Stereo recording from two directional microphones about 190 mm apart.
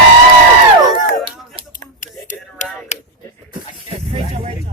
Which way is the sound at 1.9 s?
40° left (ahead or behind).